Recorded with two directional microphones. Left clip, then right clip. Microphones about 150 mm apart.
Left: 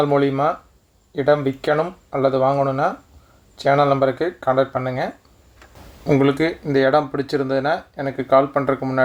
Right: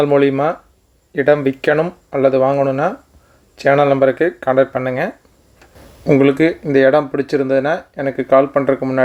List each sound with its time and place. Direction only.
0.0 s speech: 25° right (ahead or behind)
3.9 s speech: 20° right (ahead or behind)